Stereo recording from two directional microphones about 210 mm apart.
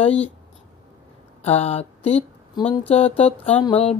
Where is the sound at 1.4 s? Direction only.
30° left (ahead or behind).